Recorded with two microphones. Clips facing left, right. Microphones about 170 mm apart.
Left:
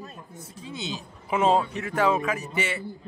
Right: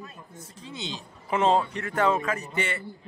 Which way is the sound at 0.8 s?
15° left (ahead or behind).